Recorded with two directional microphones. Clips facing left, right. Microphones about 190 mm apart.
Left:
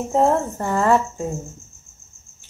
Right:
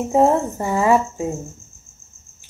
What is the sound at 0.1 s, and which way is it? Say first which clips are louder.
Speech: right 2 dB; 10° right (ahead or behind).